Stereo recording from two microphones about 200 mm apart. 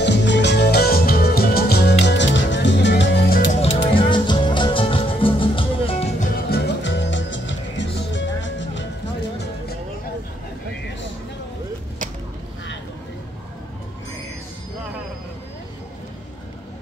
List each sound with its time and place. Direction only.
0.0 s music: 60° left (ahead or behind)
3.9 s music: 25° left (ahead or behind)
6.3 s music: 55° left (ahead or behind)